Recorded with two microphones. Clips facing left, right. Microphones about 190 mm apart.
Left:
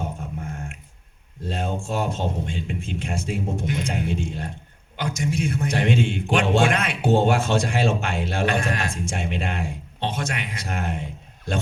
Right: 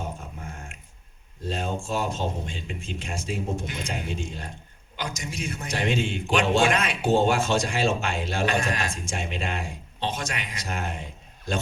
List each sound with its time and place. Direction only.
1.5 s a man's voice: 55° left (ahead or behind)